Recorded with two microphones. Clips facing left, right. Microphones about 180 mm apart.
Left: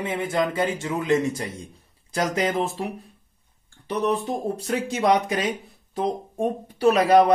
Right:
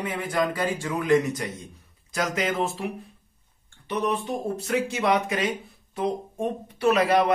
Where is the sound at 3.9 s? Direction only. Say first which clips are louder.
Left 2 dB; 35° left (ahead or behind).